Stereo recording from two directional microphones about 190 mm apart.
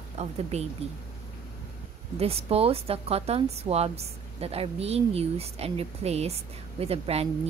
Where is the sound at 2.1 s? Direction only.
30° right (ahead or behind).